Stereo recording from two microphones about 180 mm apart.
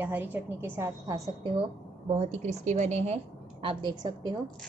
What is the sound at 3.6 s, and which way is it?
Speech, 25° right (ahead or behind).